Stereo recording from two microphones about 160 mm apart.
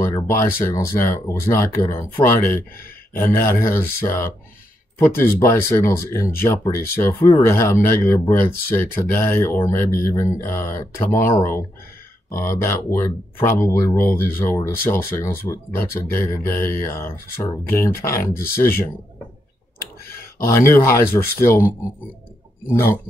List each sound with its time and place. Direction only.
0.1 s speech: 20° left (ahead or behind)
20.3 s speech: 15° left (ahead or behind)
22.7 s speech: 15° left (ahead or behind)